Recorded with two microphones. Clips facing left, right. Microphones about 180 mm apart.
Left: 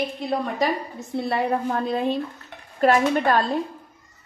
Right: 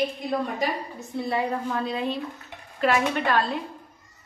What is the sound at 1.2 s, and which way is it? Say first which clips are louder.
A woman's voice: left 3 dB; 60° left (ahead or behind).